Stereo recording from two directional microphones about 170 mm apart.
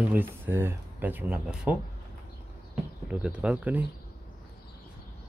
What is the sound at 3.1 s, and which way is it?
Speech, 5° right (ahead or behind).